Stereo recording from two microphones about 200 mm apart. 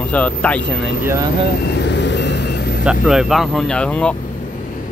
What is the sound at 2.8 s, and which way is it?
Speech, 5° right (ahead or behind).